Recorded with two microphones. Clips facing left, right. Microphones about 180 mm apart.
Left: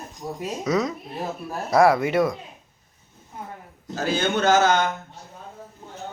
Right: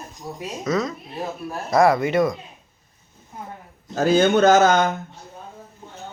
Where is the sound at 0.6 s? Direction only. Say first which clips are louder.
Even; 15° left (ahead or behind).